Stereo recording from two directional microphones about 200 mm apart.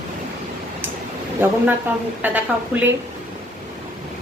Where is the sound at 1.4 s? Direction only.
10° right (ahead or behind).